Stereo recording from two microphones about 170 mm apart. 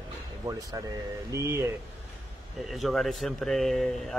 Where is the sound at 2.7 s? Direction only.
Centre (ahead or behind).